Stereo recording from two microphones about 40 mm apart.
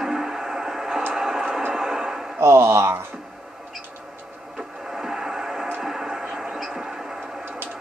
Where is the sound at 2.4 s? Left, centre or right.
Right.